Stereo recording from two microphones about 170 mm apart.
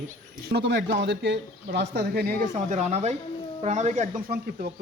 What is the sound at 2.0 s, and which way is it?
A woman's voice, 65° right (ahead or behind).